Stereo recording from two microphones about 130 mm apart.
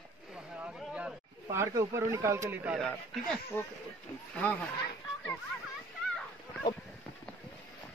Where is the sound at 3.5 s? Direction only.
15° left (ahead or behind).